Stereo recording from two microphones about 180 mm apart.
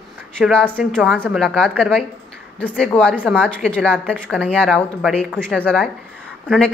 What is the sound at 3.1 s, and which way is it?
A woman's voice, 5° right (ahead or behind).